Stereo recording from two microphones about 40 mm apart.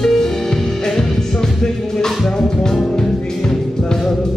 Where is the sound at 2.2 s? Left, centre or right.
Centre.